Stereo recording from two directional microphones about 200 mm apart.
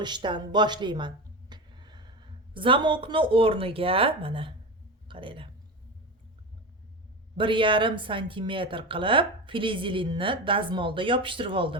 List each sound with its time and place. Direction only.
0.0 s speech: 20° right (ahead or behind)
7.3 s a woman's voice: 25° right (ahead or behind)